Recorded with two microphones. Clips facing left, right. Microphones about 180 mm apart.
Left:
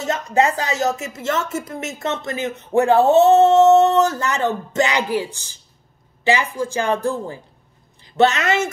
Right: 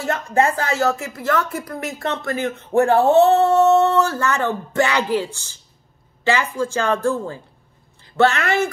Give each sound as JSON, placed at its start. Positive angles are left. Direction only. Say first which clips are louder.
{"t": 0.0, "sound": "a woman's voice", "louder": "even", "side_deg": 20}